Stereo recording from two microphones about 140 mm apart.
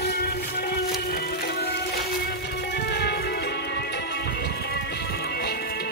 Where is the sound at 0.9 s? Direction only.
90° left.